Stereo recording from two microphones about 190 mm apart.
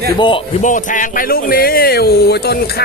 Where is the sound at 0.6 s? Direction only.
40° left (ahead or behind).